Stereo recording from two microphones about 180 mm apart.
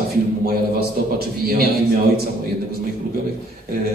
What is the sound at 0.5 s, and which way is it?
Speech, 55° right (ahead or behind).